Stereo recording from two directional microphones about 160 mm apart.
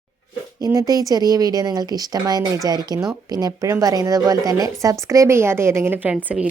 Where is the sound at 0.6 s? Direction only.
20° right (ahead or behind).